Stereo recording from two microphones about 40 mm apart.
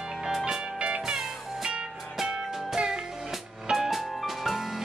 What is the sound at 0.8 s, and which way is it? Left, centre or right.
Music, right.